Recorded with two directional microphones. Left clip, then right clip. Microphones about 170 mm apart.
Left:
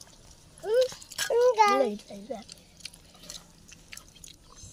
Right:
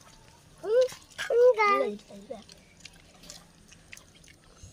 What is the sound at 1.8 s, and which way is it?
Speech, 20° left (ahead or behind).